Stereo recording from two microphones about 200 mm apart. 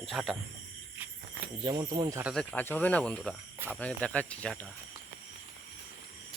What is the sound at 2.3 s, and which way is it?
Speech, 5° left (ahead or behind).